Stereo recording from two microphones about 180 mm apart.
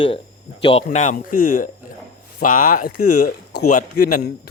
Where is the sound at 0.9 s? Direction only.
45° left (ahead or behind).